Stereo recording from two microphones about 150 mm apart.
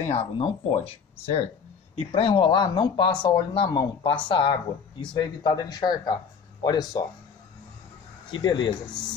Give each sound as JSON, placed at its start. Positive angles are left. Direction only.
{"t": 0.0, "sound": "speech", "side_deg": 45}
{"t": 8.3, "sound": "speech", "side_deg": 30}